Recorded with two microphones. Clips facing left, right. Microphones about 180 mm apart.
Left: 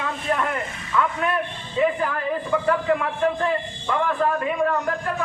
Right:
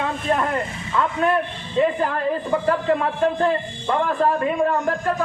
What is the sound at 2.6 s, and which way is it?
A man's voice, 35° right (ahead or behind).